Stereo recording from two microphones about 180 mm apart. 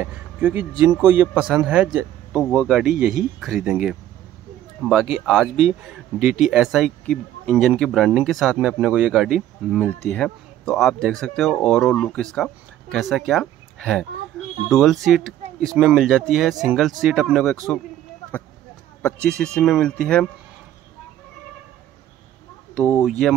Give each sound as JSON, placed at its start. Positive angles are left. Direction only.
{"t": 0.0, "sound": "a man's voice", "side_deg": -10}
{"t": 2.9, "sound": "speech", "side_deg": -50}
{"t": 3.3, "sound": "speech", "side_deg": 0}
{"t": 5.1, "sound": "speech", "side_deg": 0}
{"t": 19.2, "sound": "speech", "side_deg": 5}
{"t": 22.8, "sound": "speech", "side_deg": 5}